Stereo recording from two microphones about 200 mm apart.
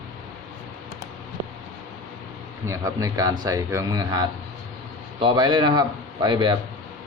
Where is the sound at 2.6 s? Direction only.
15° right (ahead or behind).